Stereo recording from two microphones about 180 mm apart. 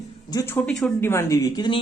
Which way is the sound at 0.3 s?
15° left (ahead or behind).